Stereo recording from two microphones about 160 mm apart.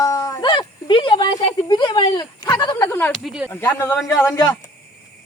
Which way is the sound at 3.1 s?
5° right (ahead or behind).